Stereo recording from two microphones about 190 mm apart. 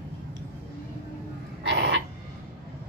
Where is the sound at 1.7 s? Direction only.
65° right (ahead or behind).